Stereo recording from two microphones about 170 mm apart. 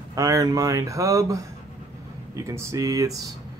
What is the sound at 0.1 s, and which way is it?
Speech, 20° right (ahead or behind).